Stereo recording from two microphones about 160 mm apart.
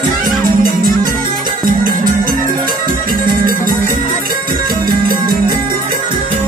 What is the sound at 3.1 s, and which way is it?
Music, 60° right (ahead or behind).